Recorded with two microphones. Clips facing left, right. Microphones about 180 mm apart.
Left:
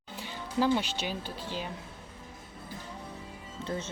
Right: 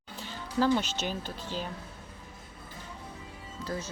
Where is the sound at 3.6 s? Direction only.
25° left (ahead or behind).